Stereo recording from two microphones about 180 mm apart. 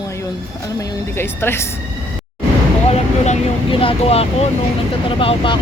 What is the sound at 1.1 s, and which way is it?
Speech, 10° left (ahead or behind).